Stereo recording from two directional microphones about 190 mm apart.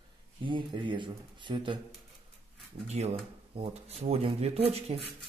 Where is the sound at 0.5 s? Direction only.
25° right (ahead or behind).